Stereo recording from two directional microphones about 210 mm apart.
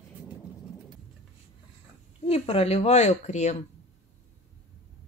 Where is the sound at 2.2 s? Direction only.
30° left (ahead or behind).